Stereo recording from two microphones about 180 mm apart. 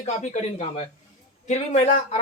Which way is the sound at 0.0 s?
35° left (ahead or behind).